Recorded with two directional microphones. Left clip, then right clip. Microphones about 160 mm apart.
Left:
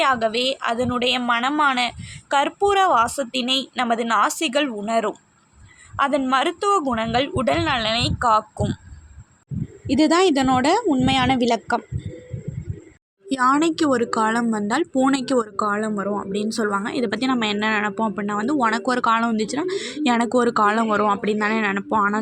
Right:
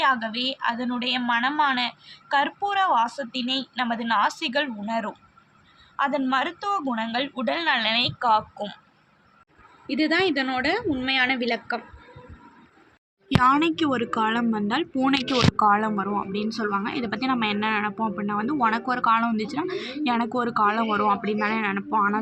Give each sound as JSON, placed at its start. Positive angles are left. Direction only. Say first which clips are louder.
{"t": 0.0, "sound": "a woman's voice", "louder": "left 4 dB", "side_deg": 60}
{"t": 9.8, "sound": "a woman's voice", "louder": "left 5 dB", "side_deg": 60}
{"t": 13.2, "sound": "speech", "louder": "left 1 dB", "side_deg": 45}
{"t": 15.5, "sound": "speech", "louder": "right 2 dB", "side_deg": 20}
{"t": 16.3, "sound": "speech", "louder": "left 4 dB", "side_deg": 40}